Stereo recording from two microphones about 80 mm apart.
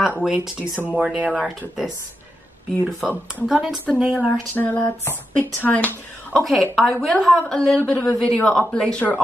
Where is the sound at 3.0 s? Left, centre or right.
Centre.